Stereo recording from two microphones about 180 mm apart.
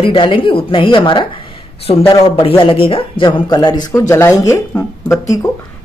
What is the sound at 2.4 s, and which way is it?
Speech, 30° left (ahead or behind).